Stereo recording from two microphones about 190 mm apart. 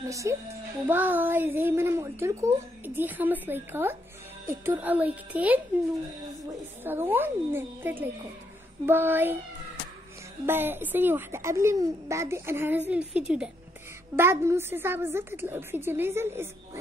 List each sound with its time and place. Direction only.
0.1 s a woman's voice: 15° right (ahead or behind)
6.8 s a woman's voice: 10° right (ahead or behind)
10.4 s a woman's voice: 10° right (ahead or behind)